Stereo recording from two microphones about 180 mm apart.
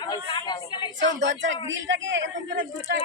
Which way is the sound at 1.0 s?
90° right.